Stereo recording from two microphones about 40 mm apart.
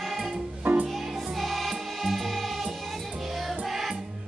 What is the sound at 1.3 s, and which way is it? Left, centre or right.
Music, centre.